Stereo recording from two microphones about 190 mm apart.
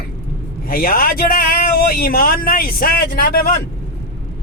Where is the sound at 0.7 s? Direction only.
50° left (ahead or behind).